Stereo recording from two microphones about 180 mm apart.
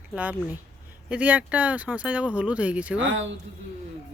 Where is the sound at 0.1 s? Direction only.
10° right (ahead or behind).